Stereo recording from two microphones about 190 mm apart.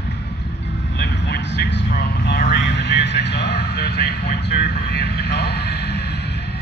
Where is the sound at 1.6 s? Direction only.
60° left (ahead or behind).